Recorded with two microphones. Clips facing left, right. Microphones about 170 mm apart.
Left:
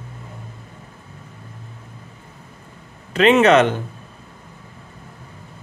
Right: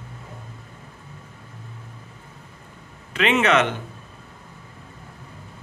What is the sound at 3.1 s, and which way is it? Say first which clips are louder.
Speech: left 7 dB; 35° left (ahead or behind).